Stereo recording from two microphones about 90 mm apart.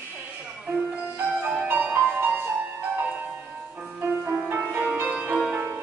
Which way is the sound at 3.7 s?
20° right (ahead or behind).